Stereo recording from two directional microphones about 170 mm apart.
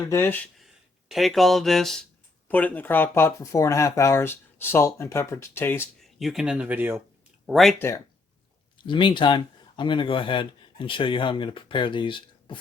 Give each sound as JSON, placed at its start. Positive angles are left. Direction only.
{"t": 0.1, "sound": "speech", "side_deg": 10}
{"t": 0.6, "sound": "speech", "side_deg": 0}
{"t": 6.0, "sound": "speech", "side_deg": 0}
{"t": 7.4, "sound": "speech", "side_deg": 0}
{"t": 8.8, "sound": "speech", "side_deg": 30}